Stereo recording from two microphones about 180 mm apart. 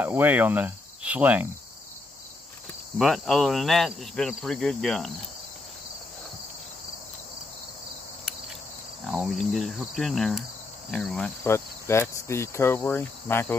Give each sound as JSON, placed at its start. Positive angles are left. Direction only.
{"t": 0.0, "sound": "cricket", "side_deg": -10}
{"t": 3.0, "sound": "insect", "side_deg": 0}
{"t": 9.0, "sound": "insect", "side_deg": 0}
{"t": 10.9, "sound": "speech", "side_deg": 5}